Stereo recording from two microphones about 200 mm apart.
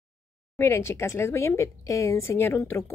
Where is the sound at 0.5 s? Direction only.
15° left (ahead or behind).